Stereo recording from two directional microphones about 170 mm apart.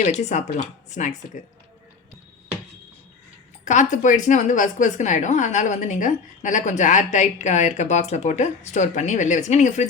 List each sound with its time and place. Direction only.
0.0 s speech: 40° left (ahead or behind)
3.6 s speech: 45° left (ahead or behind)